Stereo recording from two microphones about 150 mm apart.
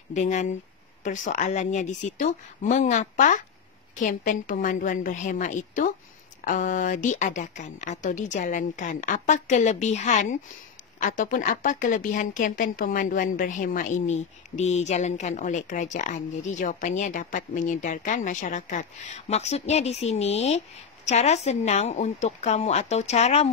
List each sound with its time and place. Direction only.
0.1 s a woman's voice: 50° left (ahead or behind)